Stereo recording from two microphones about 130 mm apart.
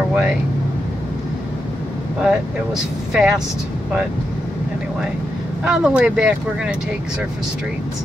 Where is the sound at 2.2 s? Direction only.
5° right (ahead or behind).